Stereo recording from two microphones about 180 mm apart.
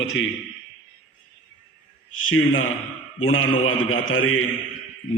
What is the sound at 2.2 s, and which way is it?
A man's voice, 90° left.